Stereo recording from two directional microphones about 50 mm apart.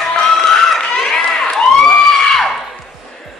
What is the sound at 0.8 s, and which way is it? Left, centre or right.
Run, centre.